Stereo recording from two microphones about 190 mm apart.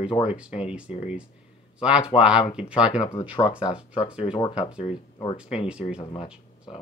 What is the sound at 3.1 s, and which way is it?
Speech, 25° left (ahead or behind).